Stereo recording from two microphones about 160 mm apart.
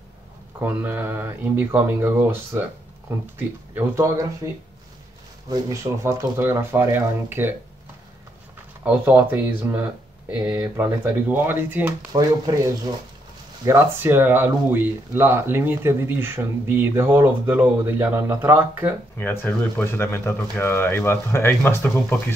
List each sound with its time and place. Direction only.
0.6 s speech: 10° right (ahead or behind)
5.5 s speech: 20° right (ahead or behind)
8.8 s speech: 10° right (ahead or behind)
19.1 s speech: 10° left (ahead or behind)